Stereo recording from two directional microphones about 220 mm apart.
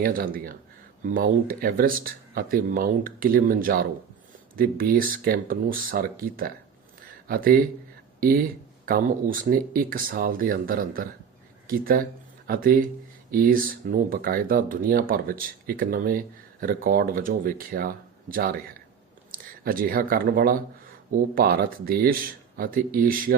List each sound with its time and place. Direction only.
0.0 s speech: 40° right (ahead or behind)
8.9 s speech: 40° right (ahead or behind)